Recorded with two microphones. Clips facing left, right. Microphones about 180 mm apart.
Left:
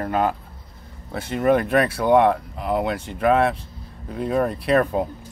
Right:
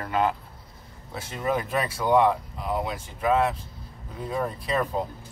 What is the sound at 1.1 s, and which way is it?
Speech, 65° left (ahead or behind).